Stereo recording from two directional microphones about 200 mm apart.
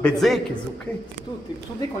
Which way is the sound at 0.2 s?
Centre (ahead or behind).